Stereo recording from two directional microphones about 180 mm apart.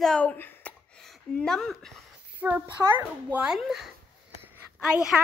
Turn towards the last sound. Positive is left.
turn(degrees=-5)  # may be behind; listen again after turning